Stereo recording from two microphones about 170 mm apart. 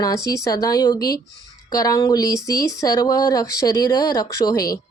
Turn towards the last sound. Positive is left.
turn(degrees=20)  # may be behind; listen again after turning